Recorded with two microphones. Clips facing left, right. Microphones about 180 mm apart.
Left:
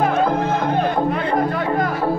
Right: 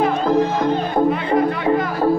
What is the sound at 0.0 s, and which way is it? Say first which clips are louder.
Speech: right 1 dB; 55° left (ahead or behind).